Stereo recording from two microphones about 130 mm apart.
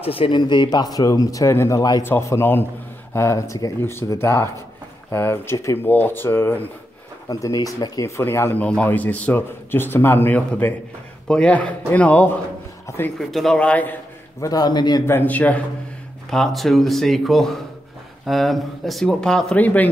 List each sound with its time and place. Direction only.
0.0 s speech: 45° left (ahead or behind); by 12.4 s 10° left (ahead or behind)
12.8 s a sound: 20° left (ahead or behind)
13.2 s speech: centre (ahead or behind)
14.4 s a man's voice: 30° left (ahead or behind)
15.0 s speech: 15° left (ahead or behind)